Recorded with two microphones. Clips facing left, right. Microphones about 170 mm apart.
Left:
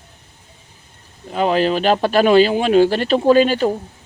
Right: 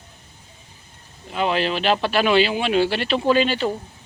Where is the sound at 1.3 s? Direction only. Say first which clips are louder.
Left 5 dB; 40° left (ahead or behind).